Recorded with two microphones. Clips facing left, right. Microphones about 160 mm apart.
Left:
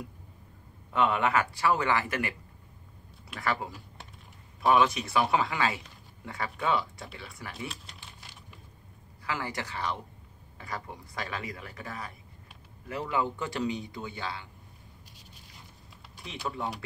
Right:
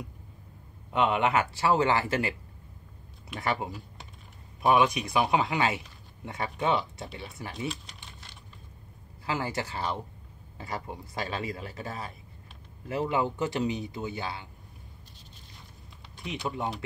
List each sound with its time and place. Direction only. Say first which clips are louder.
0.9 s speech: right 1 dB; 20° right (ahead or behind)
3.3 s speech: right 1 dB; 20° right (ahead or behind)
7.6 s a sound: right 5 dB; centre (ahead or behind)
9.2 s speech: right 3 dB; 25° right (ahead or behind)
16.4 s speech: right 1 dB; 20° right (ahead or behind)